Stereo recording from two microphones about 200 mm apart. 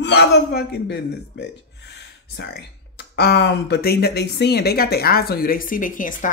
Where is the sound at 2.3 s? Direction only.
55° left (ahead or behind).